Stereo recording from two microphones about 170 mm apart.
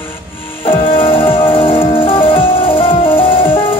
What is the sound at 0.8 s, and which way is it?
Music, 30° left (ahead or behind).